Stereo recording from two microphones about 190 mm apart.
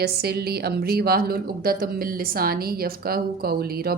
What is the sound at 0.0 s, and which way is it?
A woman's voice, 55° right (ahead or behind).